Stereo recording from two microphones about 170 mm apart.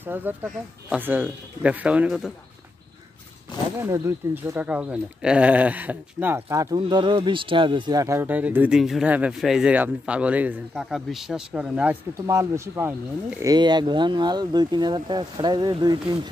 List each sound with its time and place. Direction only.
0.0 s speech: 10° right (ahead or behind)
3.8 s speech: 15° right (ahead or behind)